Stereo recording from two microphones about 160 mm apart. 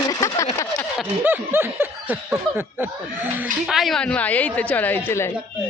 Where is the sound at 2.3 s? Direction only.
10° right (ahead or behind).